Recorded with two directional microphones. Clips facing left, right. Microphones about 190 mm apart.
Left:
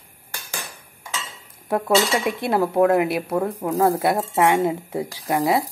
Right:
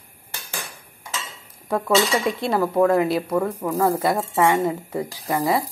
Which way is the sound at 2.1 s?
20° left (ahead or behind).